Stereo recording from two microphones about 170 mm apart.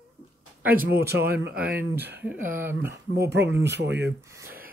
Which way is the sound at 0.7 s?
65° right (ahead or behind).